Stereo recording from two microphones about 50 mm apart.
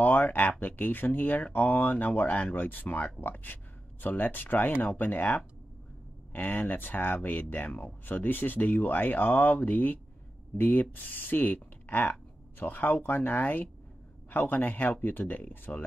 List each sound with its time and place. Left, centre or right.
0.0 s speech: left